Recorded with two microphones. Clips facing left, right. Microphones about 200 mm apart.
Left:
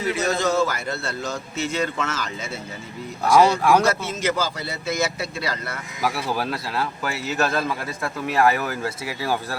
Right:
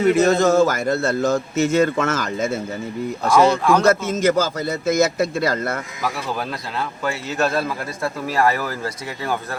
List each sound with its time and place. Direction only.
0.0 s a man's voice: 50° right (ahead or behind)
3.5 s speech: 10° left (ahead or behind)
3.8 s a man's voice: 50° right (ahead or behind)
6.3 s speech: 5° left (ahead or behind)